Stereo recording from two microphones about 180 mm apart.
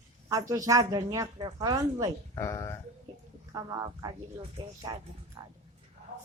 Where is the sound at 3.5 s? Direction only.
20° right (ahead or behind).